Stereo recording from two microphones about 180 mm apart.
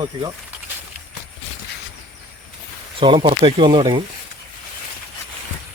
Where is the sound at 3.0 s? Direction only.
30° right (ahead or behind).